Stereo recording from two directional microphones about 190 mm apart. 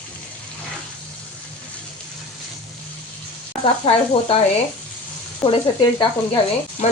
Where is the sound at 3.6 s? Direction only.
30° left (ahead or behind).